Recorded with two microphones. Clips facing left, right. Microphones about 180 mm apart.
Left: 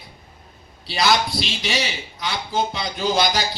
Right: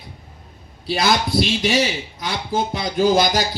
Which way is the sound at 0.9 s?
50° right (ahead or behind).